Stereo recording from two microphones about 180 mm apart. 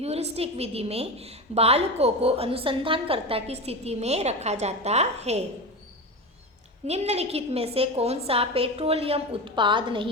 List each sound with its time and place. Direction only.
0.0 s a woman's voice: 35° right (ahead or behind)
6.8 s a woman's voice: 35° right (ahead or behind)